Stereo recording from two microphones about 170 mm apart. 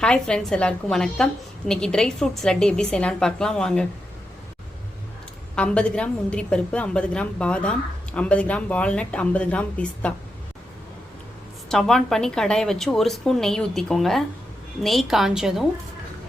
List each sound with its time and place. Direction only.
0.0 s a woman's voice: 5° left (ahead or behind)
5.5 s a woman's voice: 5° left (ahead or behind)
11.7 s a woman's voice: 5° left (ahead or behind)